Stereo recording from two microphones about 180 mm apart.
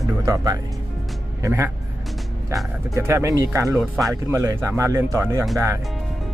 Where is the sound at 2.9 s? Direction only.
15° right (ahead or behind).